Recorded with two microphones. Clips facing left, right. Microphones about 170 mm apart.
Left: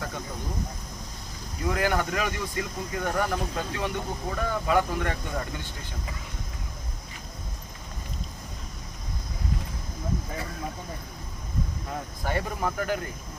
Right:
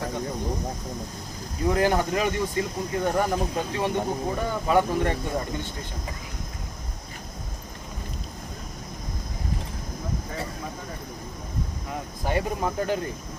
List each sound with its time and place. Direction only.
1.6 s speech: 30° right (ahead or behind)
12.2 s speech: 20° right (ahead or behind)